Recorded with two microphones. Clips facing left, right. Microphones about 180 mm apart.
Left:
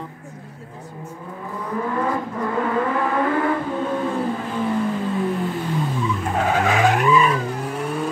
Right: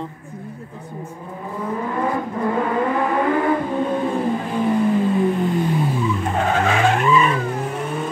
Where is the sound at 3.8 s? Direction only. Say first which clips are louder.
Right 2 dB; 20° right (ahead or behind); by 7.3 s 5° left (ahead or behind).